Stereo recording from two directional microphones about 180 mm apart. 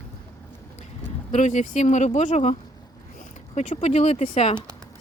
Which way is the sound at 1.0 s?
40° left (ahead or behind).